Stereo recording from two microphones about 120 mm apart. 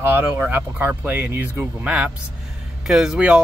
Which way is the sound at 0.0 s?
15° right (ahead or behind).